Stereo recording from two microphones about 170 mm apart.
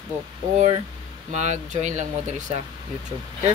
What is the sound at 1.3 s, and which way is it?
Speech, 45° right (ahead or behind).